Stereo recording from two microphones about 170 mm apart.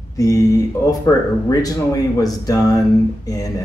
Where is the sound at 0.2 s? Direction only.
20° left (ahead or behind).